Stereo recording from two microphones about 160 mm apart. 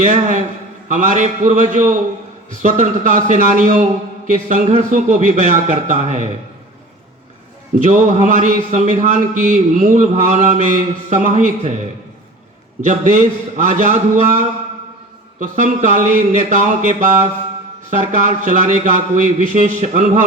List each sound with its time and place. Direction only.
0.0 s a man's voice: 50° right (ahead or behind)
7.9 s a man's voice: 50° right (ahead or behind)
12.8 s a man's voice: 50° right (ahead or behind)